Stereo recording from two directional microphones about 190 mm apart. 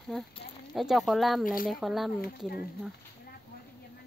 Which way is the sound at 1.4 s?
45° left (ahead or behind).